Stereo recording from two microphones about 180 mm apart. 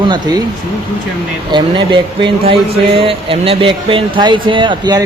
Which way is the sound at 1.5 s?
25° right (ahead or behind).